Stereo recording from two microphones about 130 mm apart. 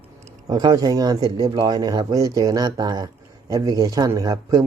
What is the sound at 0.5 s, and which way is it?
A man's voice, 30° right (ahead or behind).